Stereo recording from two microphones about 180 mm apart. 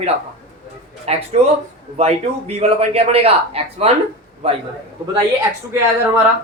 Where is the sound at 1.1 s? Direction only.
35° right (ahead or behind).